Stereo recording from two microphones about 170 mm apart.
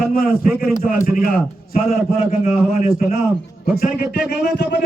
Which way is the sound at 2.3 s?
45° left (ahead or behind).